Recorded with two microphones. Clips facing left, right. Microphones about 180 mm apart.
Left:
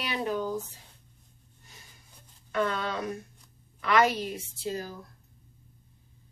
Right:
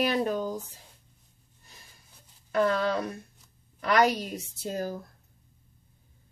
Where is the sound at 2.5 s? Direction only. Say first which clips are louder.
Right 4 dB; 35° right (ahead or behind).